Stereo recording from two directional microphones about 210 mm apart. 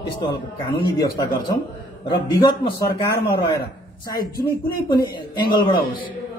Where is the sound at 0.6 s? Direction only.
20° left (ahead or behind).